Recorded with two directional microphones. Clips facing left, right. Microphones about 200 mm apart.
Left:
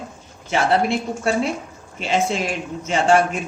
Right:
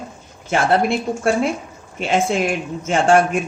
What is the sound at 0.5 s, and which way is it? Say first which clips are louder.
A woman's voice: right 2 dB; 50° right (ahead or behind).